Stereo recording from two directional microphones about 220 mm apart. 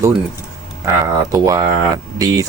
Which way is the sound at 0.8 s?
15° right (ahead or behind).